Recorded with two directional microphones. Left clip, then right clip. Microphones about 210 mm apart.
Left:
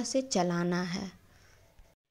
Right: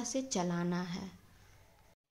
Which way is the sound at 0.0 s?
25° left (ahead or behind).